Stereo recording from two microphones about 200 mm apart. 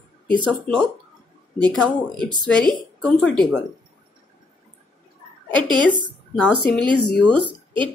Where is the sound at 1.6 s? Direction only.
Centre (ahead or behind).